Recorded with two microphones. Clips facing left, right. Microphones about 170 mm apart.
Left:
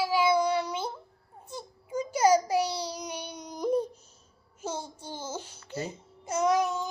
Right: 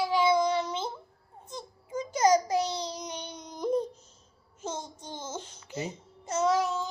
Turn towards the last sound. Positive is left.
turn(degrees=15)  # may be behind; listen again after turning